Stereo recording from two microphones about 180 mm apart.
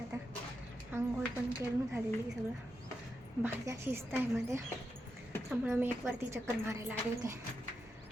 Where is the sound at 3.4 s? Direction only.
15° right (ahead or behind).